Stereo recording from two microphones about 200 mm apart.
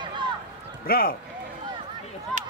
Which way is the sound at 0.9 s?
50° left (ahead or behind).